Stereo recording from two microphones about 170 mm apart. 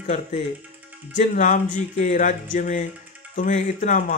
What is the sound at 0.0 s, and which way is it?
Speech, 45° left (ahead or behind).